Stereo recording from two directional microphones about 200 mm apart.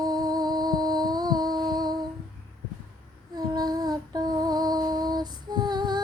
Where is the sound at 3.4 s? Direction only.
20° right (ahead or behind).